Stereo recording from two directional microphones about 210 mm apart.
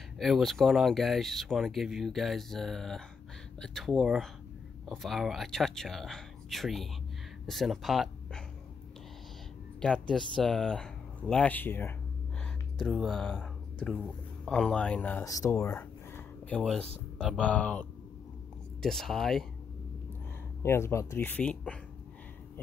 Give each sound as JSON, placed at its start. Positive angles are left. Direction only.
{"t": 0.2, "sound": "speech", "side_deg": 0}
{"t": 9.8, "sound": "speech", "side_deg": 5}
{"t": 12.7, "sound": "speech", "side_deg": 0}
{"t": 20.6, "sound": "speech", "side_deg": 10}